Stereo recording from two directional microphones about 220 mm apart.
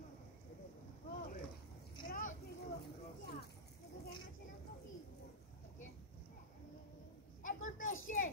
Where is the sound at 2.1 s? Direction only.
35° left (ahead or behind).